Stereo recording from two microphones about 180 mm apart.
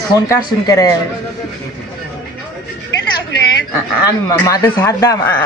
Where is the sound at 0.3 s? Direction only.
20° left (ahead or behind).